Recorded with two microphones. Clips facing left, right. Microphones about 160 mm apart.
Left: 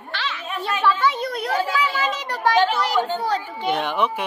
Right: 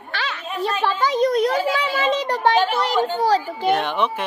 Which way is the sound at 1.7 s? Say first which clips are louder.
Right 3 dB; 30° right (ahead or behind).